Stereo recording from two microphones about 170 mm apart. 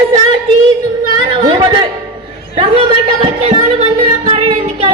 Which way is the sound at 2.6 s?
35° right (ahead or behind).